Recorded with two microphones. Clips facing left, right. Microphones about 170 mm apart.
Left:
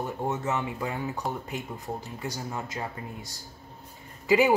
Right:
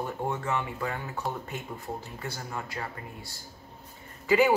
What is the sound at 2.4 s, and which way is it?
Speech, 20° left (ahead or behind).